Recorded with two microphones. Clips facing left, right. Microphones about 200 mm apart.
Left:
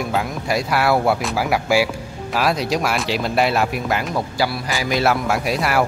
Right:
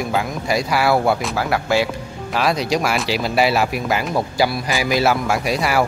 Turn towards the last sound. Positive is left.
turn(degrees=0)  # may be behind; listen again after turning